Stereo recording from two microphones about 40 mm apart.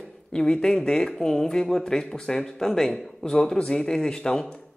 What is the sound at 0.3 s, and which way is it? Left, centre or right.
A man's voice, centre.